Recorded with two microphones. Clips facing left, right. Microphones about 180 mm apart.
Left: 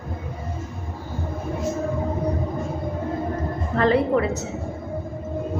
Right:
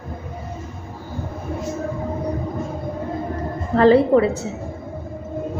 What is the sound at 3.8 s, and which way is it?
Speech, 30° right (ahead or behind).